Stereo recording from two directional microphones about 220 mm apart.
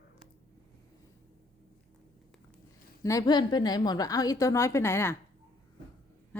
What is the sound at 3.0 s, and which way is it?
A woman's voice, 15° left (ahead or behind).